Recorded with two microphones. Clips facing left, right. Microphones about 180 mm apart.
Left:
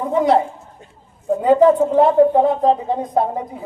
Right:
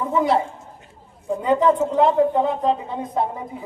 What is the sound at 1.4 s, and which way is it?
Speech, 45° left (ahead or behind).